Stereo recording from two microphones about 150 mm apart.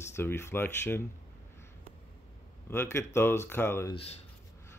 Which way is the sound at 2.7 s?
15° left (ahead or behind).